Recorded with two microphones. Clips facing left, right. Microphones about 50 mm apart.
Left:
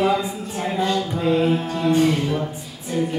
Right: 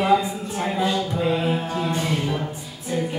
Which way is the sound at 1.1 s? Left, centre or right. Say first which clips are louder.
Left 3 dB; centre.